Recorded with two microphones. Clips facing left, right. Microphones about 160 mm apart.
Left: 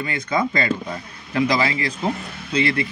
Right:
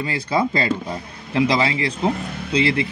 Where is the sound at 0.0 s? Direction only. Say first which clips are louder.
Right 2 dB; 30° right (ahead or behind).